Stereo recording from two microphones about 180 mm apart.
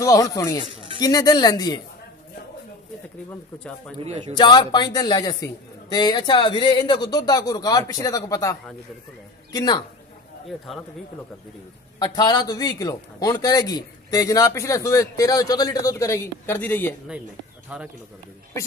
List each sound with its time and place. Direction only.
0.0 s a man's voice: 20° left (ahead or behind)
3.5 s speech: 5° left (ahead or behind)
4.0 s a man's voice: 35° right (ahead or behind)
4.3 s a man's voice: 25° left (ahead or behind)
12.0 s a man's voice: 25° left (ahead or behind)
17.7 s a man's voice: 5° right (ahead or behind)